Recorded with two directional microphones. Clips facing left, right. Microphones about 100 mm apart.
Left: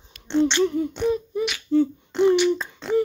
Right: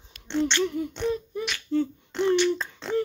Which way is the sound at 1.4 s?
10° left (ahead or behind).